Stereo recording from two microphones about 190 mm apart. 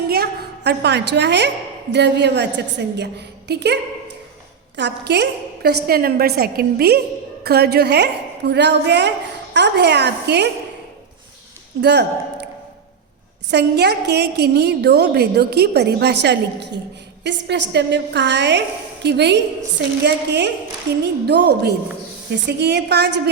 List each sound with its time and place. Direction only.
0.1 s a woman's voice: 55° right (ahead or behind)
4.8 s a woman's voice: 65° right (ahead or behind)
11.8 s a woman's voice: 60° right (ahead or behind)
13.5 s a woman's voice: 60° right (ahead or behind)